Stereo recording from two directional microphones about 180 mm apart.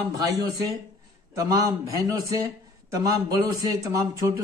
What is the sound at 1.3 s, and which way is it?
A man's voice, 20° right (ahead or behind).